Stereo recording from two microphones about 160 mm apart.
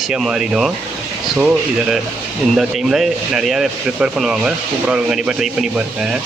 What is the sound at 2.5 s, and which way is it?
Speech, centre (ahead or behind).